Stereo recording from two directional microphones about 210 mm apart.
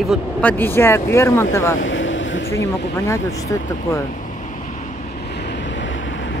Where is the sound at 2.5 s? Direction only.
15° left (ahead or behind).